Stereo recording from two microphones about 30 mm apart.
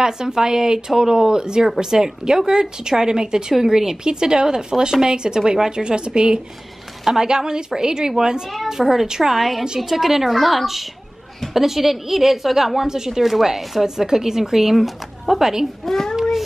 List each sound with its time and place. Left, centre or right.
0.0 s speech: right
4.0 s speech: right
9.2 s a woman's voice: centre
12.8 s speech: centre
13.8 s speech: centre
15.8 s a child's voice: centre